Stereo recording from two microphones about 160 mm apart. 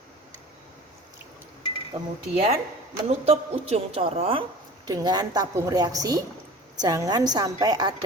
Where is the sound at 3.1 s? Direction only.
40° right (ahead or behind).